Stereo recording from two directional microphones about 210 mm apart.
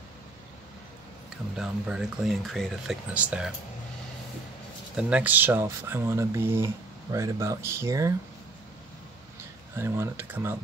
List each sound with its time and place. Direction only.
1.6 s speech: centre (ahead or behind)
4.9 s speech: 5° right (ahead or behind)
9.8 s speech: 10° right (ahead or behind)